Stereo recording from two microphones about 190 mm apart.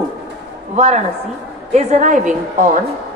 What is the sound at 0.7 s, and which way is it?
A woman's voice, 35° right (ahead or behind).